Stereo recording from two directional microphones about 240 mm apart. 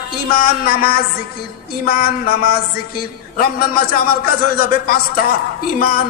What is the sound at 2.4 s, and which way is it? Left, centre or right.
Music, left.